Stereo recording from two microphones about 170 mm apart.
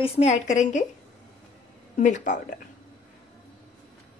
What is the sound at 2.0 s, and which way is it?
Speech, 45° left (ahead or behind).